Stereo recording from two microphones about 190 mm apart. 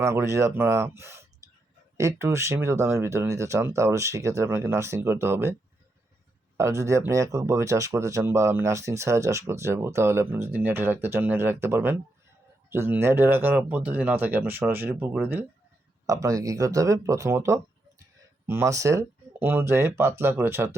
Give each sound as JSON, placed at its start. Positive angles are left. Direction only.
{"t": 0.0, "sound": "speech", "side_deg": -15}
{"t": 6.6, "sound": "speech", "side_deg": -15}